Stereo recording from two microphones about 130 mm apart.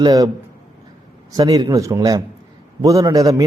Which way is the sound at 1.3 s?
30° right (ahead or behind).